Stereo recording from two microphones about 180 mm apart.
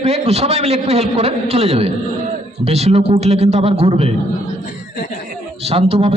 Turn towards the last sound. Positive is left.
turn(degrees=-35)  # may be behind; listen again after turning